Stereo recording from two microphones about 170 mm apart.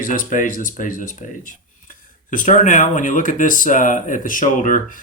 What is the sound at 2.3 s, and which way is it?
Speech, 50° left (ahead or behind).